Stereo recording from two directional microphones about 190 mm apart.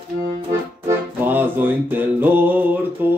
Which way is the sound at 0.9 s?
10° right (ahead or behind).